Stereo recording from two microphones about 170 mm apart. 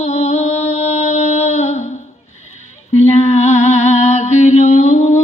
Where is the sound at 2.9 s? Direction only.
40° left (ahead or behind).